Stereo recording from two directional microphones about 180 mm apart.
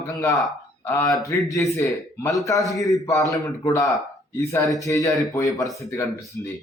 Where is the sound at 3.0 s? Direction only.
15° left (ahead or behind).